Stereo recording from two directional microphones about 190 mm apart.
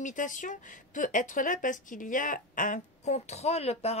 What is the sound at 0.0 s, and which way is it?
Speech, 40° left (ahead or behind).